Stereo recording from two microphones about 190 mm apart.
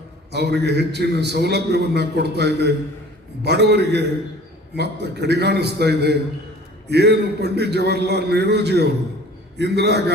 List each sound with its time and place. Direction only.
0.3 s a man's voice: 60° right (ahead or behind)